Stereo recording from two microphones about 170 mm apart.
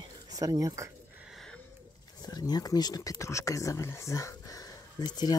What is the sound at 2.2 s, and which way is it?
Speech, 25° left (ahead or behind).